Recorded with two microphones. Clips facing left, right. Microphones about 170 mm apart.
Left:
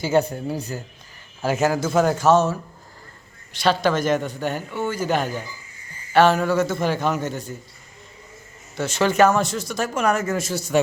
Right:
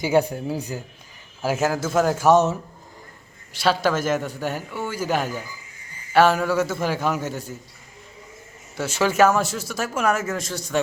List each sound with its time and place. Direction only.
0.0 s a man's voice: 10° right (ahead or behind)
2.2 s a man's voice: 20° right (ahead or behind)
3.5 s a man's voice: 5° right (ahead or behind)
8.7 s speech: 10° right (ahead or behind)